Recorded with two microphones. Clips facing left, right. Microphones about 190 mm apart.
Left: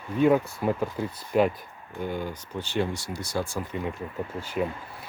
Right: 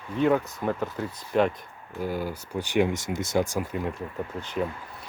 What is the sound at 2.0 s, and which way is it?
Speech, 5° right (ahead or behind).